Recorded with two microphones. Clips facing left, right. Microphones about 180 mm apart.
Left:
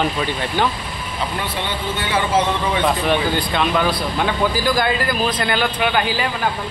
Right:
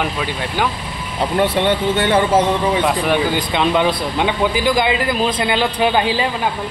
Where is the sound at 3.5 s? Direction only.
20° right (ahead or behind).